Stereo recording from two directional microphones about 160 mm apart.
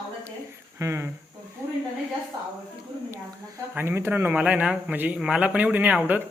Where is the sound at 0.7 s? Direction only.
15° right (ahead or behind).